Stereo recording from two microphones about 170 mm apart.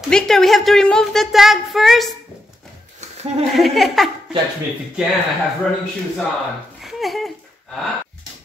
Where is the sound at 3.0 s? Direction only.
45° right (ahead or behind).